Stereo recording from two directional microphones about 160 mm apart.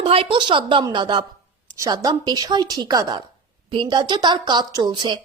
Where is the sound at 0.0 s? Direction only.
35° right (ahead or behind).